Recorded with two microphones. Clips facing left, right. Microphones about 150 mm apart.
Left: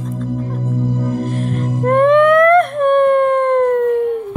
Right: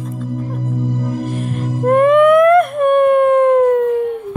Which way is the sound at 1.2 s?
5° right (ahead or behind).